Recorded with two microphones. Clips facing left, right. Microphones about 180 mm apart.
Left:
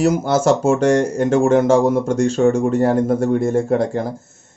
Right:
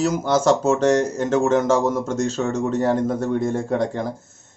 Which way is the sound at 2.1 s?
55° left (ahead or behind).